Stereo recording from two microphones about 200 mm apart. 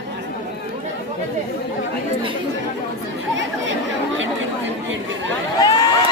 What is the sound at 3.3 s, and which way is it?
Chatter, 70° right (ahead or behind).